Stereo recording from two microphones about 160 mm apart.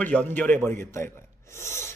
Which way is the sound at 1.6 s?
15° left (ahead or behind).